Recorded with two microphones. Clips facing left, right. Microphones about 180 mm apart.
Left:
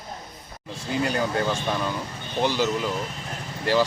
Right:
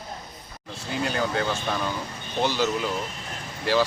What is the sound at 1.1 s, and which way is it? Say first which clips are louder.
Speech: left 1 dB; 5° left (ahead or behind).